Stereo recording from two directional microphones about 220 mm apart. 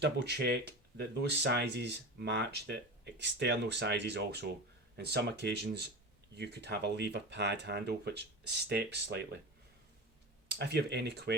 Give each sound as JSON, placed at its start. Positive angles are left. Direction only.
{"t": 0.0, "sound": "speech", "side_deg": -50}
{"t": 10.5, "sound": "speech", "side_deg": -50}